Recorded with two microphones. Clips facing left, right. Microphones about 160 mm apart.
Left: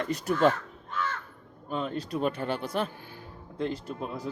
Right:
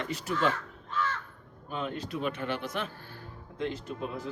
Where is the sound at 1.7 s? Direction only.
35° left (ahead or behind).